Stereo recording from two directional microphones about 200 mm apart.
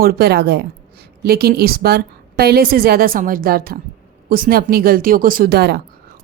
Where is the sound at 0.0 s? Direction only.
50° right (ahead or behind).